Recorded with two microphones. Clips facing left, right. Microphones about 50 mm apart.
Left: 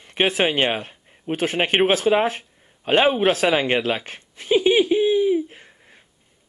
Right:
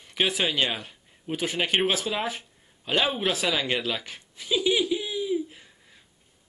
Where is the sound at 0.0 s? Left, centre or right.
Left.